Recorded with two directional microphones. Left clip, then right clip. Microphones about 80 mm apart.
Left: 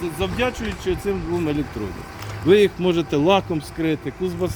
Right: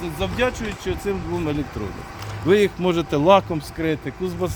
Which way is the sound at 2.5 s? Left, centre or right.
Right.